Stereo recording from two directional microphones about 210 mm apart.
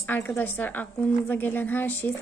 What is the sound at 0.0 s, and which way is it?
A woman's voice, 10° left (ahead or behind).